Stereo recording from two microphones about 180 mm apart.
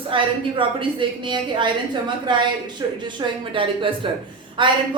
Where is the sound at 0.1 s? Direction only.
30° right (ahead or behind).